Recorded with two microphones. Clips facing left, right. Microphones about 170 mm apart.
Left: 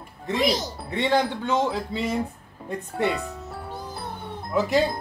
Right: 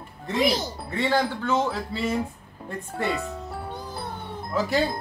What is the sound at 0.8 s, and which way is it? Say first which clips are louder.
Speech: left 2 dB; 20° left (ahead or behind).